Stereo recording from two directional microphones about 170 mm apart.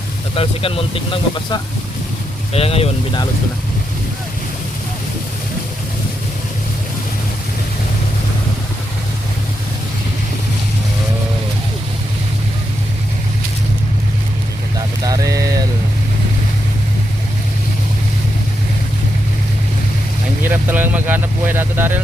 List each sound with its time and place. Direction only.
0.3 s speech: 35° left (ahead or behind)
15.0 s rain on surface: 20° right (ahead or behind)
20.4 s vehicle: 10° right (ahead or behind)